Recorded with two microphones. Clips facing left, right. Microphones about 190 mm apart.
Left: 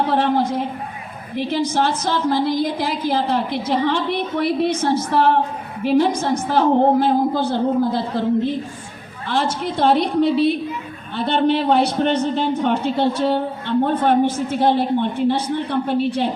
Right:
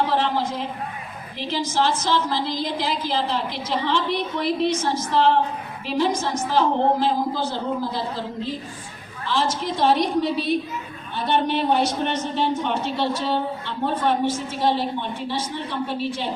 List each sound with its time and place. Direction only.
0.1 s a woman's voice: 55° left (ahead or behind)